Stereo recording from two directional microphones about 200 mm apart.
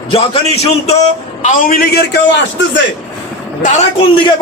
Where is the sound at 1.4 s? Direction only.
45° left (ahead or behind).